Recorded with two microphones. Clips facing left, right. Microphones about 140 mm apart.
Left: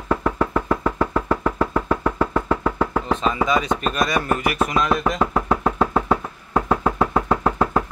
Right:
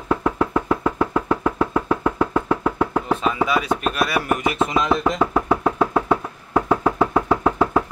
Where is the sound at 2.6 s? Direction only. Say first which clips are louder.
Right 1 dB; 5° right (ahead or behind).